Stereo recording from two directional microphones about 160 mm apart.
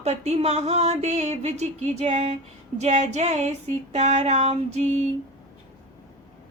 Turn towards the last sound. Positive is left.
turn(degrees=-45)  # may be behind; listen again after turning